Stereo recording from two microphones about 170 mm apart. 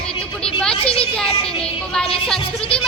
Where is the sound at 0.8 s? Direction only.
35° left (ahead or behind).